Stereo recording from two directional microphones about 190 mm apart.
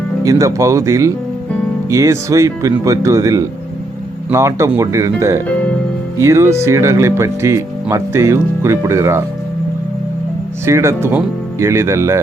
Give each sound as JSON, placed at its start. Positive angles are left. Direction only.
{"t": 0.3, "sound": "speech", "side_deg": -15}
{"t": 10.7, "sound": "speech", "side_deg": -15}